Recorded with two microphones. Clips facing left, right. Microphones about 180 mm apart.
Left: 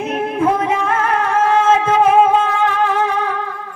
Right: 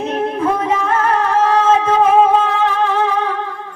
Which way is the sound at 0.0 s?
30° right (ahead or behind).